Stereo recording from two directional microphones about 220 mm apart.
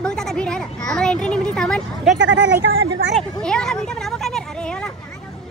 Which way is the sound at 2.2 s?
55° right (ahead or behind).